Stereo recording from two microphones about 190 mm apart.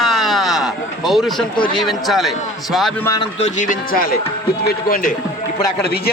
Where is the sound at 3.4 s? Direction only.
40° left (ahead or behind).